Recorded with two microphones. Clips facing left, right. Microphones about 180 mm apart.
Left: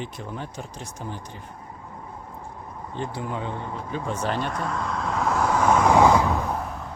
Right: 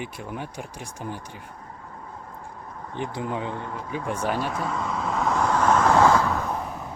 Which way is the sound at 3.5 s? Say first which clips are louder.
Even; 15° left (ahead or behind).